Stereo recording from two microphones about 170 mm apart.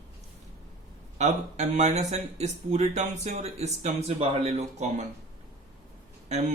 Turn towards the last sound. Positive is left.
turn(degrees=-40)  # may be behind; listen again after turning